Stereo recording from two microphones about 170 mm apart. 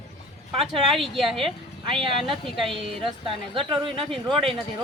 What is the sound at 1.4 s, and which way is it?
Speech, 30° right (ahead or behind).